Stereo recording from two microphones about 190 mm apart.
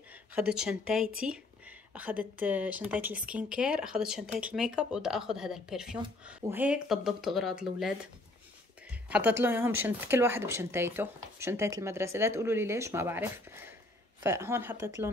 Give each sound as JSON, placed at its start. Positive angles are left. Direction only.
{"t": 0.3, "sound": "speech", "side_deg": -5}
{"t": 9.1, "sound": "speech", "side_deg": -10}